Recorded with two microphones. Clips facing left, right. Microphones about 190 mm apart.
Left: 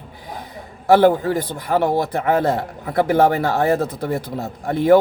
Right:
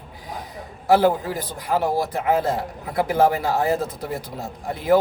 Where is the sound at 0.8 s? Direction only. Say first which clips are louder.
Left 4 dB; 60° left (ahead or behind).